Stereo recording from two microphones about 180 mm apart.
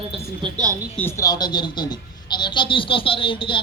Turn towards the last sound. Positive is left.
turn(degrees=30)  # may be behind; listen again after turning